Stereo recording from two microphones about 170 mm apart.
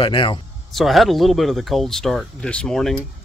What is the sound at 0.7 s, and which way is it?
Speech, centre (ahead or behind).